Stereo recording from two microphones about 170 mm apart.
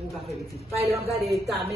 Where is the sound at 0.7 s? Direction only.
20° right (ahead or behind).